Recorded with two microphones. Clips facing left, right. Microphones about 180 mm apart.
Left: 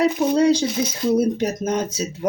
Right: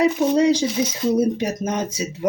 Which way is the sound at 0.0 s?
20° right (ahead or behind).